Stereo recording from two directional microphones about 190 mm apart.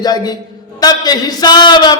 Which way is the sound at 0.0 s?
20° left (ahead or behind).